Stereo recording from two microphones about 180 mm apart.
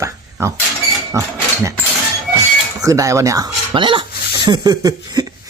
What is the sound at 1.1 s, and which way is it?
Speech, 15° right (ahead or behind).